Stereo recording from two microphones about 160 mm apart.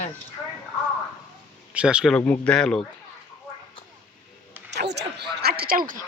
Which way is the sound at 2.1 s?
10° left (ahead or behind).